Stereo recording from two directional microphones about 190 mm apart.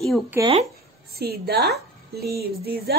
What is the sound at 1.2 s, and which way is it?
A woman's voice, 55° right (ahead or behind).